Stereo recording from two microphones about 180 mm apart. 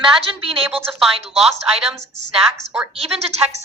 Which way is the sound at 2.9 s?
35° right (ahead or behind).